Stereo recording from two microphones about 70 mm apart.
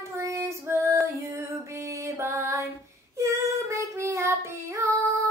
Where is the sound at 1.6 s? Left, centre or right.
Right.